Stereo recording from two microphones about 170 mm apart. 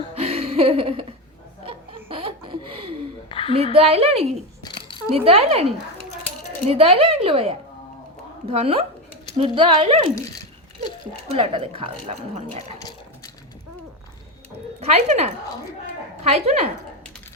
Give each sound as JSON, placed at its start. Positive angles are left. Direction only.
{"t": 0.1, "sound": "a sound", "side_deg": -35}
{"t": 1.6, "sound": "laughter", "side_deg": -30}
{"t": 3.2, "sound": "a sound", "side_deg": 30}
{"t": 3.5, "sound": "a woman's voice", "side_deg": -35}
{"t": 4.6, "sound": "a sound", "side_deg": 25}
{"t": 5.1, "sound": "a woman's voice", "side_deg": -35}
{"t": 11.3, "sound": "a woman's voice", "side_deg": -35}
{"t": 14.8, "sound": "speech", "side_deg": -40}
{"t": 16.3, "sound": "a woman's voice", "side_deg": -40}